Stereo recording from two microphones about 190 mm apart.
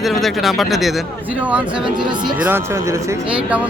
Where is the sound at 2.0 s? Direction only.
25° right (ahead or behind).